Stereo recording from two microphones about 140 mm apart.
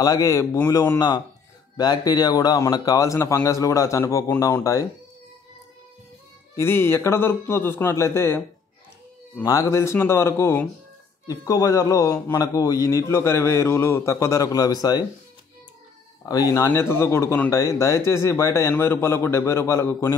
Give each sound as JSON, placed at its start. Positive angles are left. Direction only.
{"t": 0.0, "sound": "speech", "side_deg": 25}
{"t": 6.5, "sound": "speech", "side_deg": 15}
{"t": 9.4, "sound": "speech", "side_deg": 25}
{"t": 16.3, "sound": "speech", "side_deg": 25}